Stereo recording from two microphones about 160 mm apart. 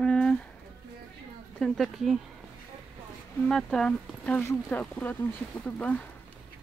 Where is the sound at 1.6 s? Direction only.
Centre (ahead or behind).